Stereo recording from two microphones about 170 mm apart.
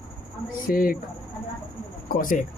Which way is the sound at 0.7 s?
60° left (ahead or behind).